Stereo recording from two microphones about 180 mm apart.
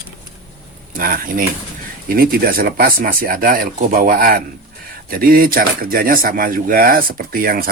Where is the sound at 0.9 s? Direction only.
50° right (ahead or behind).